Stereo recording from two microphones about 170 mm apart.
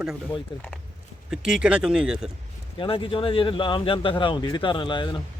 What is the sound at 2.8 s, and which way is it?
Speech, 30° left (ahead or behind).